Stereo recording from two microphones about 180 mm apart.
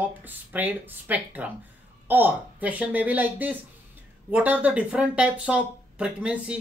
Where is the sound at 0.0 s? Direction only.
10° right (ahead or behind).